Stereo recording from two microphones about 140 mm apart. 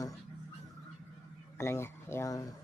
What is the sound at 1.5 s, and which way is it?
Speech, 20° left (ahead or behind).